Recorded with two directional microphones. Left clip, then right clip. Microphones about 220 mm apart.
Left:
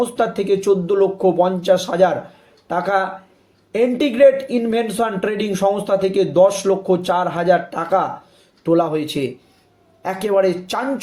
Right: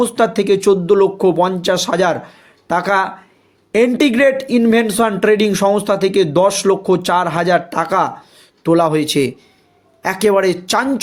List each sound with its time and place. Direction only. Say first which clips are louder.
0.0 s speech: right 4 dB; 50° right (ahead or behind)